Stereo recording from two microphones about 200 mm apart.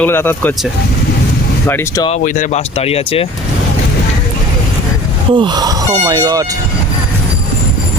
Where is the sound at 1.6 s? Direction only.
15° left (ahead or behind).